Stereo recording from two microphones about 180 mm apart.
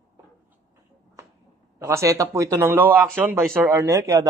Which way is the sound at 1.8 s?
15° right (ahead or behind).